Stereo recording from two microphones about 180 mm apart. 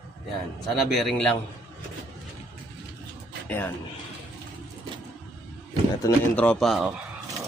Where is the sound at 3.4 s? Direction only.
10° left (ahead or behind).